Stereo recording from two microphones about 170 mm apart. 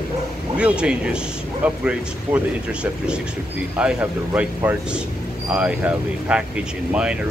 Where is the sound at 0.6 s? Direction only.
5° right (ahead or behind).